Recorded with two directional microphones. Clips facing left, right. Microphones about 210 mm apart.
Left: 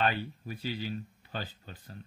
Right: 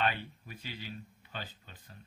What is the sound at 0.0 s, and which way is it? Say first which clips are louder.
Speech: left 3 dB; 35° left (ahead or behind).